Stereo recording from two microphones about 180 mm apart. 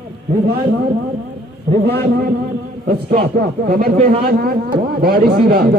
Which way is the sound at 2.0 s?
60° right (ahead or behind).